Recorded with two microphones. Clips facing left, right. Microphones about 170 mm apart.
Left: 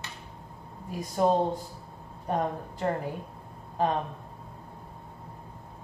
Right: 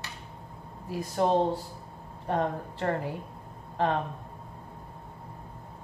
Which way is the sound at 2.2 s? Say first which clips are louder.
Right 1 dB; 10° left (ahead or behind).